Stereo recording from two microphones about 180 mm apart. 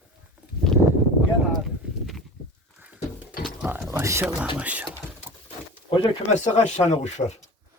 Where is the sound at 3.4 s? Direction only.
10° right (ahead or behind).